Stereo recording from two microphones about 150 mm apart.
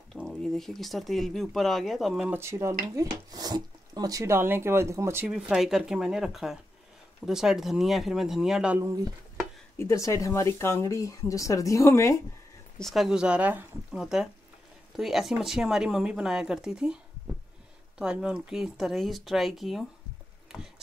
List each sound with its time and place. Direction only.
0.1 s speech: centre (ahead or behind)
2.3 s speech: 15° right (ahead or behind)
5.3 s speech: 5° right (ahead or behind)
9.8 s speech: 20° left (ahead or behind)
12.7 s speech: centre (ahead or behind)